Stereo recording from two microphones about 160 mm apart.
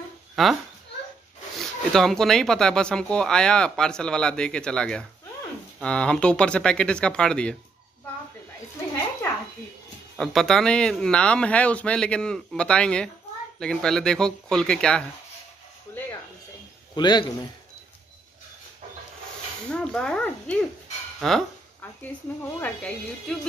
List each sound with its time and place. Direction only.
0.4 s speech: centre (ahead or behind)
1.9 s speech: 5° left (ahead or behind)
10.1 s speech: centre (ahead or behind)
16.9 s a man's voice: 25° left (ahead or behind)
19.7 s speech: 5° left (ahead or behind)
22.6 s speech: 10° left (ahead or behind)